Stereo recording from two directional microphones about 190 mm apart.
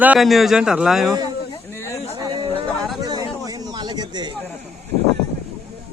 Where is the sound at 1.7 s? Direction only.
15° left (ahead or behind).